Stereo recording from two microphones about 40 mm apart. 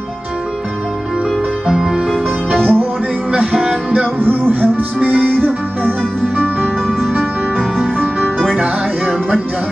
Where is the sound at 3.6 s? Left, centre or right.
Right.